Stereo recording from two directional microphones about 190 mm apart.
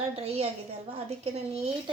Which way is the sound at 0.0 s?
35° right (ahead or behind).